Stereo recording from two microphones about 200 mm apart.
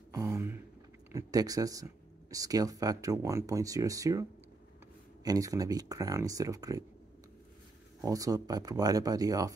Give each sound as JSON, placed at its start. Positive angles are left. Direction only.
{"t": 0.1, "sound": "a sound", "side_deg": -15}
{"t": 1.1, "sound": "speech", "side_deg": -20}
{"t": 8.0, "sound": "speech", "side_deg": -15}